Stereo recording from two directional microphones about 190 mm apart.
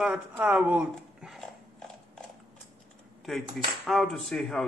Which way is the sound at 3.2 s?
Centre (ahead or behind).